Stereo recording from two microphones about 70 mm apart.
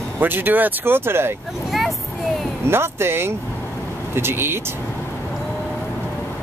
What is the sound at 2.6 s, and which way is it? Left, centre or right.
Speech, right.